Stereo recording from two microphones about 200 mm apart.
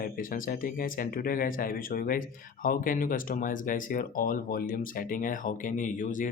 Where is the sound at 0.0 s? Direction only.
45° left (ahead or behind).